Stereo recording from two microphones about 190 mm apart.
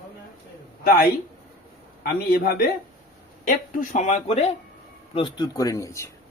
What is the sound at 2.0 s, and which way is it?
Speech, 50° left (ahead or behind).